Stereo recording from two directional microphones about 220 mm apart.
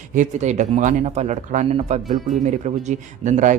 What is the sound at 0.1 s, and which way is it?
Speech, 35° right (ahead or behind).